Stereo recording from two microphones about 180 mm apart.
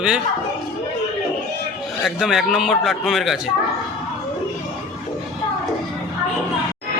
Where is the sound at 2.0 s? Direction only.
Centre (ahead or behind).